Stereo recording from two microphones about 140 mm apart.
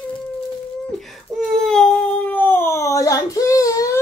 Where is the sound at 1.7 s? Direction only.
10° left (ahead or behind); by 4.0 s 25° left (ahead or behind).